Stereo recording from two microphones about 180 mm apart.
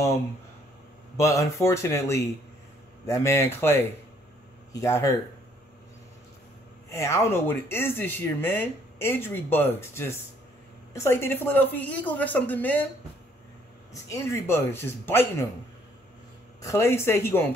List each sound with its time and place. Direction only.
1.1 s speech: 15° left (ahead or behind)
6.9 s speech: 15° left (ahead or behind)
14.0 s speech: 15° left (ahead or behind)
16.6 s speech: 15° left (ahead or behind)